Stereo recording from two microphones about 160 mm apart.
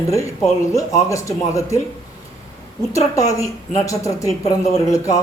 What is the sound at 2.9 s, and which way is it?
Speech, 20° left (ahead or behind).